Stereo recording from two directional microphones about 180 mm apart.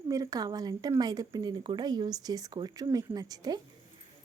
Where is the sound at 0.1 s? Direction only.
20° right (ahead or behind).